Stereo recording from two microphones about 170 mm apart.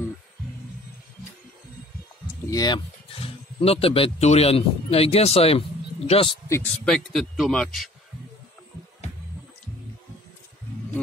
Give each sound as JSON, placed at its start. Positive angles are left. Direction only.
{"t": 2.5, "sound": "speech", "side_deg": 25}
{"t": 6.5, "sound": "speech", "side_deg": 10}